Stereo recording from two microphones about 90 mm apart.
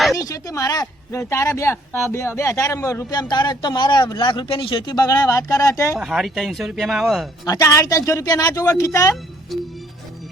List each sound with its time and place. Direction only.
0.2 s speech: 40° left (ahead or behind)
3.1 s speech: 50° left (ahead or behind)
4.2 s speech: 70° left (ahead or behind)
4.9 s speech: 45° left (ahead or behind)
6.0 s speech: 5° right (ahead or behind)
7.4 s speech: 40° left (ahead or behind)
9.5 s speech: centre (ahead or behind)